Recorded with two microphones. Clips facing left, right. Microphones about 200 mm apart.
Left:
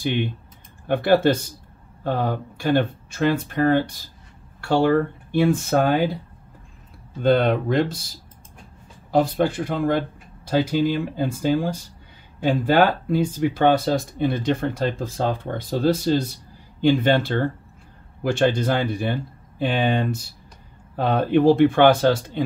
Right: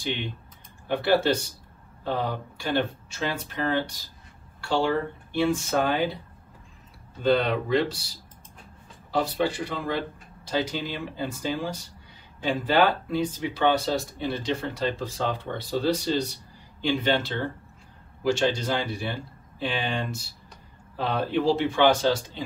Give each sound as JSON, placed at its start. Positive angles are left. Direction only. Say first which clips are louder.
{"t": 0.8, "sound": "speech", "louder": "left 5 dB", "side_deg": 50}
{"t": 7.2, "sound": "speech", "louder": "left 4 dB", "side_deg": 50}
{"t": 9.1, "sound": "speech", "louder": "left 6 dB", "side_deg": 50}